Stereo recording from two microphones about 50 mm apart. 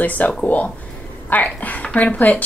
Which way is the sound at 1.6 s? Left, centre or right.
Left.